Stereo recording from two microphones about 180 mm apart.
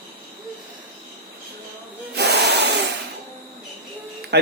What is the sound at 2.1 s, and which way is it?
Hiss, 70° right (ahead or behind).